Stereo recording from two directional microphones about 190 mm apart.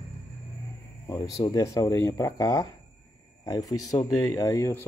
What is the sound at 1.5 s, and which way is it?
Speech, 20° left (ahead or behind).